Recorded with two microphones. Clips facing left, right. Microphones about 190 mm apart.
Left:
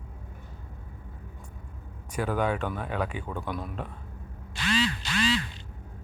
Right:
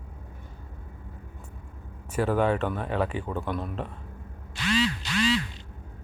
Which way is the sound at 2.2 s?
Centre (ahead or behind).